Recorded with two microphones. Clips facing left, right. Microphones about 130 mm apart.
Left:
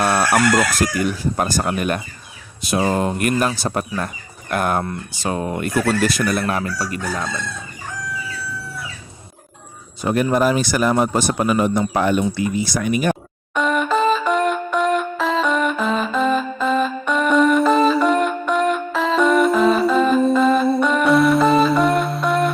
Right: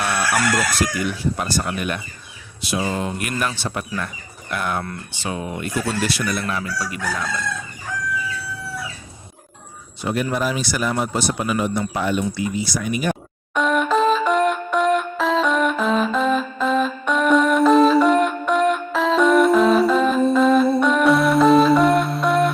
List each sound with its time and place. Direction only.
0.0 s chicken: 40° left (ahead or behind)
0.8 s speech: 45° left (ahead or behind)
6.1 s speech: 45° left (ahead or behind)
10.0 s speech: 45° left (ahead or behind)
13.5 s music: centre (ahead or behind)